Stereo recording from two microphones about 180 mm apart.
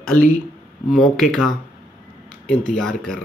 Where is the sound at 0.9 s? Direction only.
Centre (ahead or behind).